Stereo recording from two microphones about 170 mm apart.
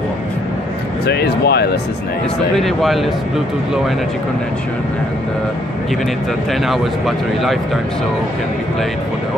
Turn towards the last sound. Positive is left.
turn(degrees=0)  # may be behind; listen again after turning